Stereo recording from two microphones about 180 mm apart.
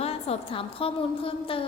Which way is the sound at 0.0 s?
35° left (ahead or behind).